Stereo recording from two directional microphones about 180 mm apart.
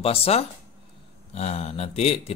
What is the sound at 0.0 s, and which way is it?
Speech, 35° left (ahead or behind).